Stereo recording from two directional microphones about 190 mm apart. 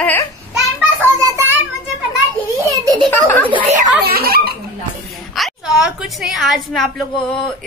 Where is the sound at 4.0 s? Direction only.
55° right (ahead or behind).